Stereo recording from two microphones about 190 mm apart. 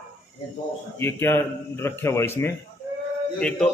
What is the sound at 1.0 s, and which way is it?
A man's voice, 10° left (ahead or behind).